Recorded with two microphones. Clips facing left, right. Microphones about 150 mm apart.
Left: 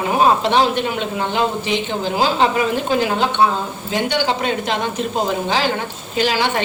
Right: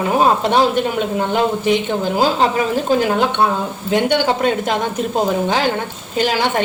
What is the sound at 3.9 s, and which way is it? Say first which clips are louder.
Speech: right 4 dB; 50° right (ahead or behind).